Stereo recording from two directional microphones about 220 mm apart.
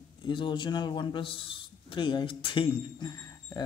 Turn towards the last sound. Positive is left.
turn(degrees=15)  # may be behind; listen again after turning